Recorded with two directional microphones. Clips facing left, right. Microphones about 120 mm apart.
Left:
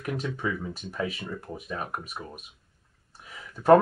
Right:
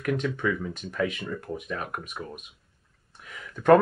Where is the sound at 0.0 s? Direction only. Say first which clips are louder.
Right 4 dB; 30° left (ahead or behind).